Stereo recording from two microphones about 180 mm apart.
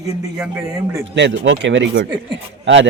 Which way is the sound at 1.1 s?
80° right.